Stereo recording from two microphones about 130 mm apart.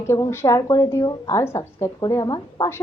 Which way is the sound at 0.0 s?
20° left (ahead or behind).